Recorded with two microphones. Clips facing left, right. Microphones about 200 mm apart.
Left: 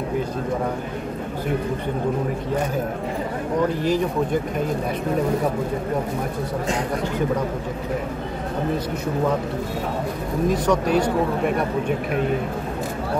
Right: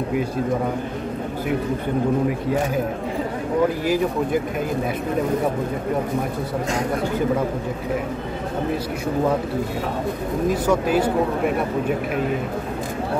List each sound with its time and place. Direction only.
3.8 s speech: 5° right (ahead or behind)
10.5 s speech: 5° right (ahead or behind)